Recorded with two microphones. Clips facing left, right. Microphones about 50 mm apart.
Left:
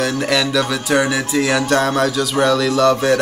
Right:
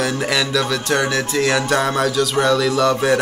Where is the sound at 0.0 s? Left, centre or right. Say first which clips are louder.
Left 2 dB; centre.